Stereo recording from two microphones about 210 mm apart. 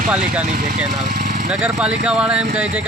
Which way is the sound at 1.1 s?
35° right (ahead or behind).